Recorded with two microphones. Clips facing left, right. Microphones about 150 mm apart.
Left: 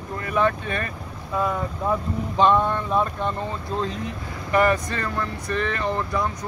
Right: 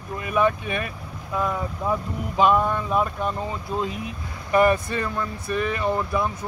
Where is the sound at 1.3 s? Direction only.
Centre (ahead or behind).